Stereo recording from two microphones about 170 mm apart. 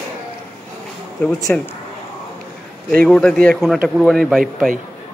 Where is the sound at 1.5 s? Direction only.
5° left (ahead or behind).